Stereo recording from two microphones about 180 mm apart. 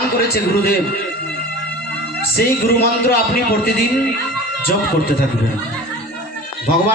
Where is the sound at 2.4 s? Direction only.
60° left (ahead or behind).